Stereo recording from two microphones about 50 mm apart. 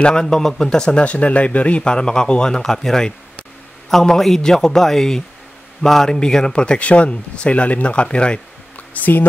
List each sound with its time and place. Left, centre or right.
0.0 s a man's voice: centre
8.7 s music: left